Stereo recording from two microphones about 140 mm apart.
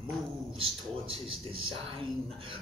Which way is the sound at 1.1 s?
40° right (ahead or behind).